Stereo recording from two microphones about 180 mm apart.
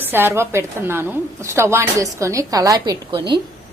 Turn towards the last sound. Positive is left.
turn(degrees=-30)  # may be behind; listen again after turning